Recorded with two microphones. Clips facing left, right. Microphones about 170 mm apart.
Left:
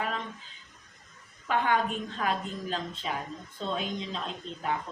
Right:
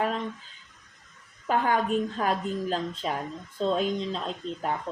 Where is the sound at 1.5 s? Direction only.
40° right (ahead or behind).